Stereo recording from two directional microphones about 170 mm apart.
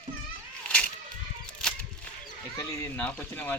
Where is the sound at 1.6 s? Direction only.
5° left (ahead or behind).